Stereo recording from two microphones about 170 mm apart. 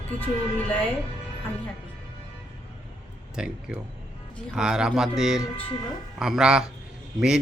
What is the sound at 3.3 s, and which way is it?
A man's voice, 5° right (ahead or behind).